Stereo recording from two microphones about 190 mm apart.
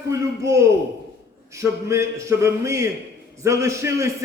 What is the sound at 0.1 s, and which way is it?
A man's voice, 15° right (ahead or behind).